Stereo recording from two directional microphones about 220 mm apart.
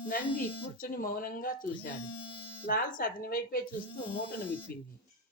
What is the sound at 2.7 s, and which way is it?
Speech, 40° left (ahead or behind).